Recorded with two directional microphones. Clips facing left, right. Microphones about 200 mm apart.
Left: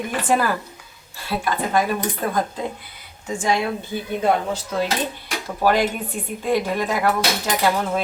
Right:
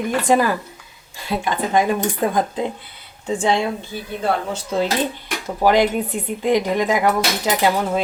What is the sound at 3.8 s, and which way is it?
Speech, 15° left (ahead or behind).